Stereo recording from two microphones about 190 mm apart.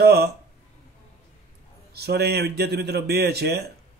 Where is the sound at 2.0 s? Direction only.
60° right (ahead or behind).